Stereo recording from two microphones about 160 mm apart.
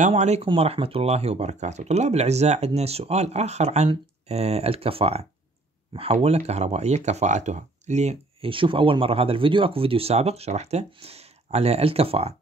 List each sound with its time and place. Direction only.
0.1 s speech: 40° right (ahead or behind)